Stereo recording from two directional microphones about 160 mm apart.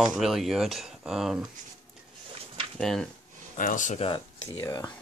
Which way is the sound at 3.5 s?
55° left (ahead or behind).